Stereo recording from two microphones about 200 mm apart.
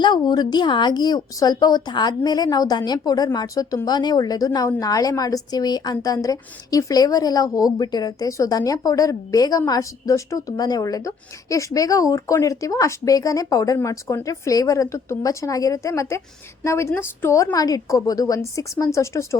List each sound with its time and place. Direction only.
0.0 s speech: 20° left (ahead or behind)